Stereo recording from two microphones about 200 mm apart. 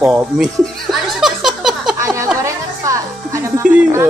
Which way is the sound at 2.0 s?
15° right (ahead or behind).